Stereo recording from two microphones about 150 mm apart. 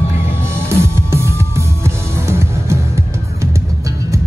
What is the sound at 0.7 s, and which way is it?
Music, 15° right (ahead or behind).